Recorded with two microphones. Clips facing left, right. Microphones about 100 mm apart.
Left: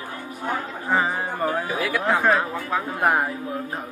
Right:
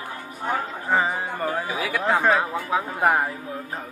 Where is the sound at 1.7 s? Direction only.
5° right (ahead or behind).